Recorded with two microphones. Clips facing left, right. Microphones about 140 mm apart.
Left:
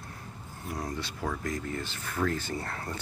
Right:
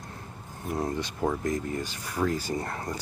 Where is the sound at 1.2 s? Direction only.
20° right (ahead or behind).